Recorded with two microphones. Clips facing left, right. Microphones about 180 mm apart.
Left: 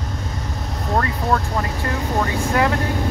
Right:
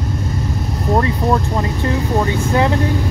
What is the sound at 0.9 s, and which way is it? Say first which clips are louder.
Speech: right 4 dB; 20° right (ahead or behind).